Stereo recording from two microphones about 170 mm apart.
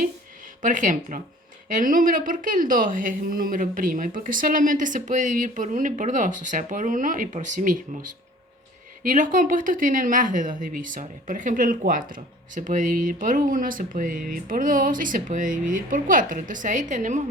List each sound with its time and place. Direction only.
0.6 s a woman's voice: 50° right (ahead or behind)
9.0 s a woman's voice: 50° right (ahead or behind)